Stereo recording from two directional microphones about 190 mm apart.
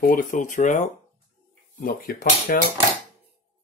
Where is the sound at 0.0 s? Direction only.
45° left (ahead or behind).